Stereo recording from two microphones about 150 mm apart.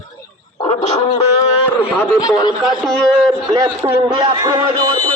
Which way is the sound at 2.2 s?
25° left (ahead or behind).